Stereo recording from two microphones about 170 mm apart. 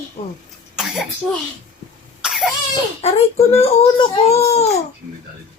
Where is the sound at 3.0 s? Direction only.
40° left (ahead or behind).